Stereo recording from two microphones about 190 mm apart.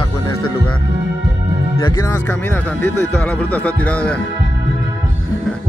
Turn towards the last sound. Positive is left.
turn(degrees=5)  # may be behind; listen again after turning